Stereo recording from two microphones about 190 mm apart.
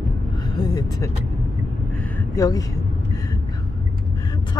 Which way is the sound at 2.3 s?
15° left (ahead or behind).